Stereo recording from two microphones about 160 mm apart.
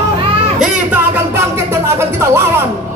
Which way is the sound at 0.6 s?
15° right (ahead or behind).